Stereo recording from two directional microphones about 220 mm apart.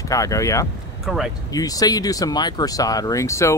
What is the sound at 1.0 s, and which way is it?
Speech, centre (ahead or behind).